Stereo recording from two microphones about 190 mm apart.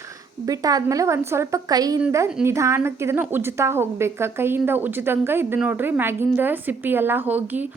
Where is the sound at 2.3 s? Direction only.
5° right (ahead or behind).